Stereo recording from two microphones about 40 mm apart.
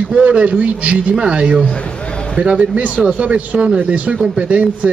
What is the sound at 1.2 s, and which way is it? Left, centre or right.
A man's voice, right.